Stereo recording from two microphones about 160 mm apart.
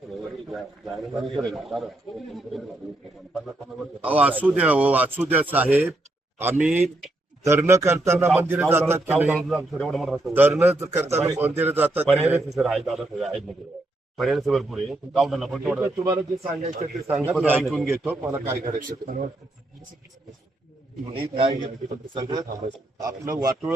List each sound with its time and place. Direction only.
0.5 s a man's voice: centre (ahead or behind)
4.0 s a man's voice: 10° right (ahead or behind)
10.3 s speech: 15° right (ahead or behind)
12.0 s a man's voice: centre (ahead or behind)
15.8 s a man's voice: 20° right (ahead or behind)
17.1 s speech: 10° right (ahead or behind)
17.6 s a man's voice: centre (ahead or behind)
18.0 s speech: 15° right (ahead or behind)
18.6 s a man's voice: 60° right (ahead or behind)
21.1 s a man's voice: 35° right (ahead or behind)